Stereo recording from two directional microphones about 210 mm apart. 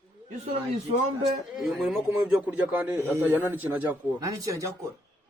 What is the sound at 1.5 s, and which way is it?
A man's voice, centre (ahead or behind).